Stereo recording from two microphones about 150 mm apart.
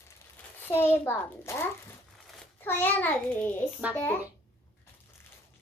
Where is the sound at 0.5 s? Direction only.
15° left (ahead or behind).